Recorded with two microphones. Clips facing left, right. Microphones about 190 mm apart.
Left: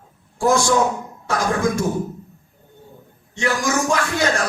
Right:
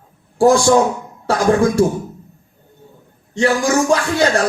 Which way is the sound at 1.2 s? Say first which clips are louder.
Right 6 dB; 35° right (ahead or behind).